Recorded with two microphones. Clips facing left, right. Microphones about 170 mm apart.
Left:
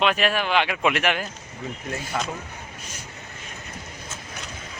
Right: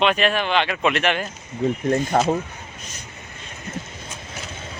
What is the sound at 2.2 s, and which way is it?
Speech, 40° right (ahead or behind).